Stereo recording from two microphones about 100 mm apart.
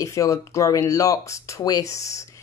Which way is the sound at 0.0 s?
30° left (ahead or behind).